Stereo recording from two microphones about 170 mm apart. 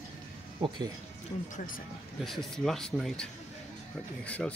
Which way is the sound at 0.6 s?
25° right (ahead or behind).